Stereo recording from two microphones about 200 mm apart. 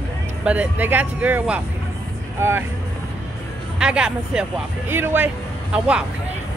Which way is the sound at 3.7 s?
5° right (ahead or behind).